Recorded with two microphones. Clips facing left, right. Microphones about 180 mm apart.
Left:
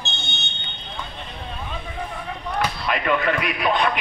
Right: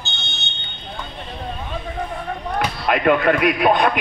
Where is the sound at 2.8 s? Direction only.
50° right (ahead or behind).